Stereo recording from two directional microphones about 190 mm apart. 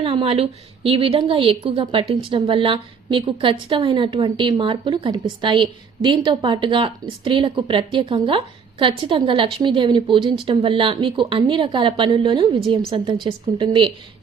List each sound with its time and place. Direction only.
0.0 s a woman's voice: 25° right (ahead or behind)